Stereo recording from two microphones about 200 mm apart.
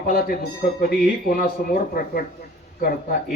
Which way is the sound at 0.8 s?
45° left (ahead or behind).